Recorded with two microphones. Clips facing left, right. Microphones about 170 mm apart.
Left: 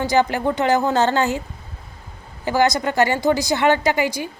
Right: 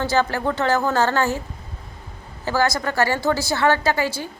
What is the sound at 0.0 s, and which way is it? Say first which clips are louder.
A woman's voice: left 2 dB; 15° left (ahead or behind).